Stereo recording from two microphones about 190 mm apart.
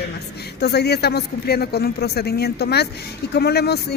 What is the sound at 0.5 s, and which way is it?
A woman's voice, 60° left (ahead or behind).